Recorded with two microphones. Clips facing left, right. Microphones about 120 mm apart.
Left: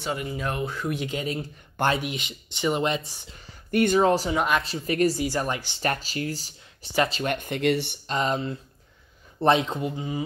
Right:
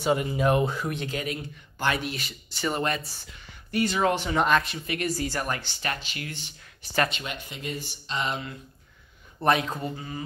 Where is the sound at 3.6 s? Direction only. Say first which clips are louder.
Left 6 dB; 50° left (ahead or behind).